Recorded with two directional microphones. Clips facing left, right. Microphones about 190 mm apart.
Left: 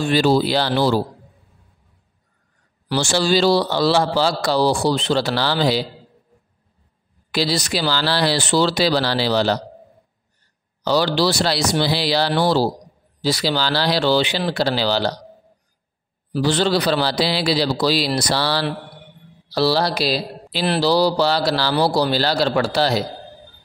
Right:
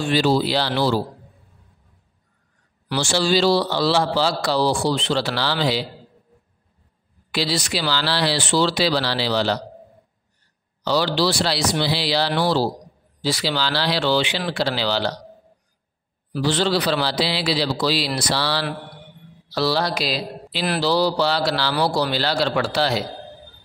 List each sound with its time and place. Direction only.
0.1 s a man's voice: 45° left (ahead or behind)
2.9 s a man's voice: 45° left (ahead or behind)
7.2 s a man's voice: 40° left (ahead or behind)
10.8 s a man's voice: 45° left (ahead or behind)
16.4 s a man's voice: 45° left (ahead or behind)